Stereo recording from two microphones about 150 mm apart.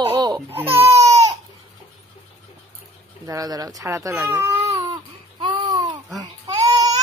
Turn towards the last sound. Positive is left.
turn(degrees=-25)  # may be behind; listen again after turning